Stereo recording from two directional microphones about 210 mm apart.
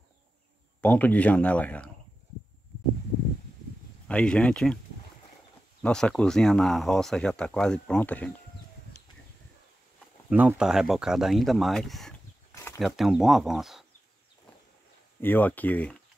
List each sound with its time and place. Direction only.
0.7 s speech: 5° left (ahead or behind)
4.1 s speech: 5° left (ahead or behind)
5.8 s speech: 5° left (ahead or behind)
10.3 s speech: 5° right (ahead or behind)
12.5 s a sound: 10° left (ahead or behind)
12.8 s speech: centre (ahead or behind)
15.1 s speech: 10° left (ahead or behind)